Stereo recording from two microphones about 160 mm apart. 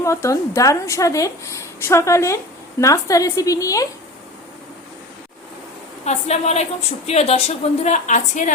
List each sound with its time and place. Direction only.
0.0 s a woman's voice: 20° left (ahead or behind)
6.1 s a woman's voice: 45° left (ahead or behind)